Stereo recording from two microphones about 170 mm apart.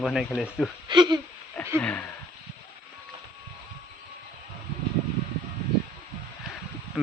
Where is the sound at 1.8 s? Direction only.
10° left (ahead or behind).